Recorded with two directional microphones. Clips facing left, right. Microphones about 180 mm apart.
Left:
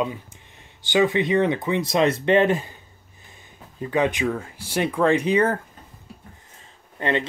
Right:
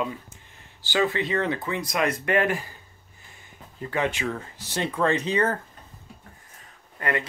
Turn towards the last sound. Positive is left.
turn(degrees=25)  # may be behind; listen again after turning